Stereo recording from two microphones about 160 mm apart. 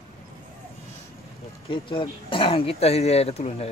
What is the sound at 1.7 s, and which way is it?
Speech, 35° left (ahead or behind).